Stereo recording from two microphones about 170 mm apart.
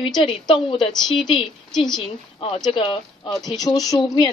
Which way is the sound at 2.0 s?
30° left (ahead or behind).